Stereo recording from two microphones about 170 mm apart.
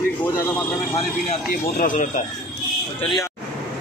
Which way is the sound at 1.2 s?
50° left (ahead or behind).